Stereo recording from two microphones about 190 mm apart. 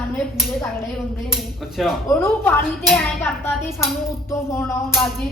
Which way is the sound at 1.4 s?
Centre (ahead or behind).